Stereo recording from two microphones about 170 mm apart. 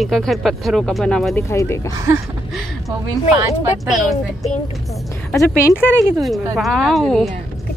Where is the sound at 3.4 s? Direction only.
20° right (ahead or behind).